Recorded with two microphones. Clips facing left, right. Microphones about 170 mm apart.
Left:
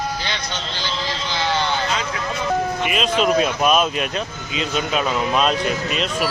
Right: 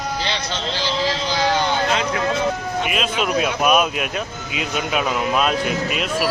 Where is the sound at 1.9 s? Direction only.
55° right (ahead or behind).